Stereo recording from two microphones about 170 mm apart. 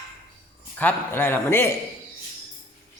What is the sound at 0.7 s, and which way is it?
A man's voice, 10° left (ahead or behind).